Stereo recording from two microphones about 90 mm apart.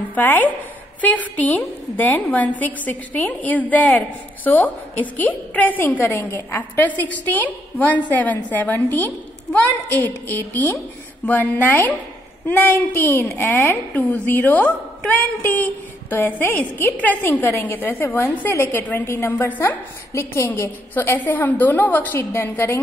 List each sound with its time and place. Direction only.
0.1 s a woman's voice: 20° left (ahead or behind)